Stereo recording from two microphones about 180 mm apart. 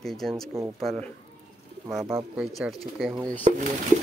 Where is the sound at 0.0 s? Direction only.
Centre (ahead or behind).